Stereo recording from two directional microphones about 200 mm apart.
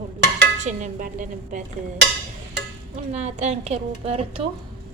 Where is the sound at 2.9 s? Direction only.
35° right (ahead or behind).